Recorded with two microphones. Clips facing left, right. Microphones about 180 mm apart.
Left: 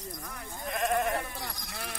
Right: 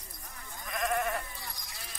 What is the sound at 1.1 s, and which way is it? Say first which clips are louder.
Sheep: left 4 dB; 70° left (ahead or behind).